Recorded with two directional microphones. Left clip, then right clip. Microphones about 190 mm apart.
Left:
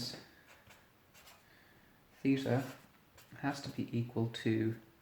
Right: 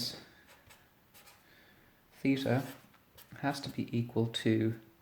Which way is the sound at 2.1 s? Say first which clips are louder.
Right 2 dB; 50° right (ahead or behind).